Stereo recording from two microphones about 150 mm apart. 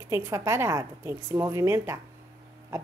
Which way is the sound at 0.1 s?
20° right (ahead or behind).